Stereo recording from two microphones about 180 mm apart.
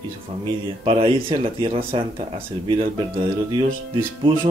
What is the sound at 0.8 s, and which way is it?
Speech, 30° right (ahead or behind).